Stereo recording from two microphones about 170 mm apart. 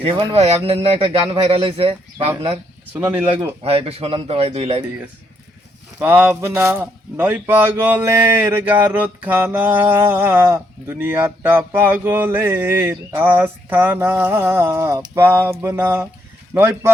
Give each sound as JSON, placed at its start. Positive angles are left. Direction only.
{"t": 0.0, "sound": "speech", "side_deg": -30}
{"t": 2.9, "sound": "speech", "side_deg": -10}
{"t": 3.6, "sound": "speech", "side_deg": -35}
{"t": 6.0, "sound": "speech", "side_deg": -10}